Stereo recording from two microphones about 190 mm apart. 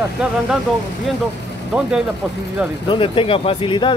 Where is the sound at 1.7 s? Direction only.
5° right (ahead or behind).